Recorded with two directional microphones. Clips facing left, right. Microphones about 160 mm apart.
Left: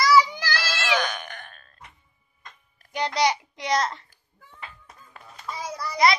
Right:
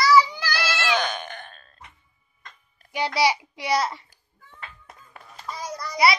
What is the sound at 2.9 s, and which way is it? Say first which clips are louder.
A child's voice: right 1 dB; 5° right (ahead or behind).